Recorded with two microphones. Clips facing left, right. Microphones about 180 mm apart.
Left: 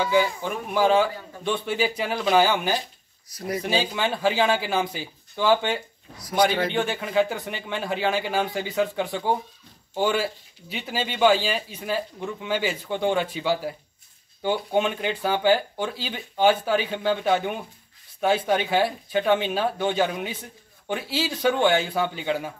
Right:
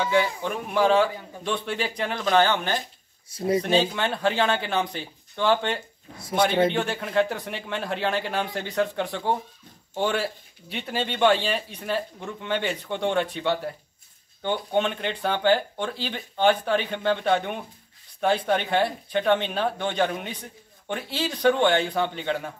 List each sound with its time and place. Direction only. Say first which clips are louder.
0.0 s speech: left 1 dB; centre (ahead or behind)
3.3 s speech: right 6 dB; 25° right (ahead or behind)
3.6 s speech: right 2 dB; 5° left (ahead or behind)
6.1 s speech: left 1 dB; 25° right (ahead or behind)
6.7 s speech: left 1 dB; centre (ahead or behind)